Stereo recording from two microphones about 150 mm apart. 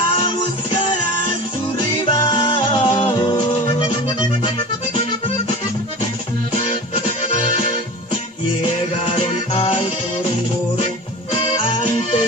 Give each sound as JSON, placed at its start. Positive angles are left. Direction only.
{"t": 2.0, "sound": "music", "side_deg": 30}
{"t": 9.0, "sound": "music", "side_deg": 35}